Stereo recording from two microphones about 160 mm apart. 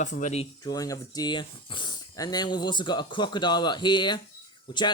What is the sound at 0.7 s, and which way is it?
Speech, 20° left (ahead or behind).